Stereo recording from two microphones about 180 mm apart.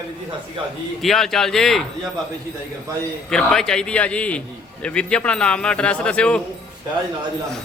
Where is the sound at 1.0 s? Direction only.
Centre (ahead or behind).